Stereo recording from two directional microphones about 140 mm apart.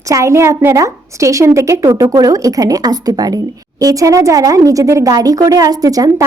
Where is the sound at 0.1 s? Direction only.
20° right (ahead or behind).